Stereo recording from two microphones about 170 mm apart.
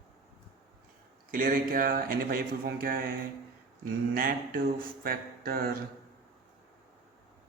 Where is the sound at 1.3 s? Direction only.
55° right (ahead or behind).